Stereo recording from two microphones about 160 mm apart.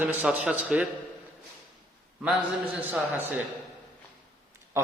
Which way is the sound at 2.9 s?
10° right (ahead or behind).